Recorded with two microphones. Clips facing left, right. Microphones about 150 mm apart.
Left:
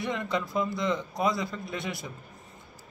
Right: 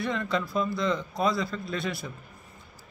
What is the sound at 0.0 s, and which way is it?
Speech, 20° left (ahead or behind).